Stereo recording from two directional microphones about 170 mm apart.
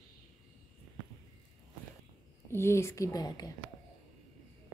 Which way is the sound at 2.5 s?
15° left (ahead or behind).